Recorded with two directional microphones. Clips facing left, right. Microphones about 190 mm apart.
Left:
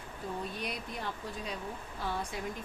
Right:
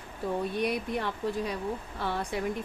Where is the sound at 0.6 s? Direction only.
65° right (ahead or behind).